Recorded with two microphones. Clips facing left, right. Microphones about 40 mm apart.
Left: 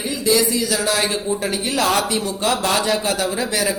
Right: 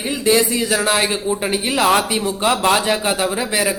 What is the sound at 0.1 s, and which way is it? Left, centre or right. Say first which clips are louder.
A man's voice: right 2 dB; right.